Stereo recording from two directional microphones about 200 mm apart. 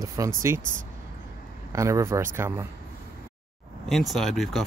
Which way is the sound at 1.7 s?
15° right (ahead or behind).